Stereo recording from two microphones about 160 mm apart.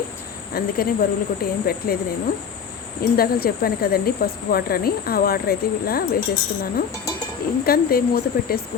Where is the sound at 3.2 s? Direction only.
75° left (ahead or behind).